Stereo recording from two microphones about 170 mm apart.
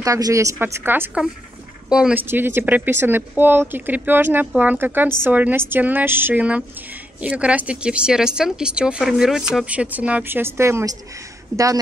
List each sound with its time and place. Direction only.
0.0 s speech: 20° right (ahead or behind)